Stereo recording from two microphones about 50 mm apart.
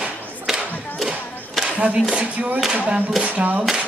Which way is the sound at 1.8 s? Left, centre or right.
Right.